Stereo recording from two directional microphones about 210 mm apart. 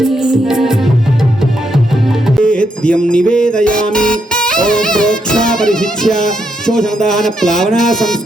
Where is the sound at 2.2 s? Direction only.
5° left (ahead or behind).